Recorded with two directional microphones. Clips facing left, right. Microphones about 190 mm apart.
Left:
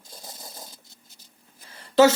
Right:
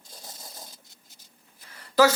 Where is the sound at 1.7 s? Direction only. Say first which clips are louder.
Left 3 dB; 25° left (ahead or behind).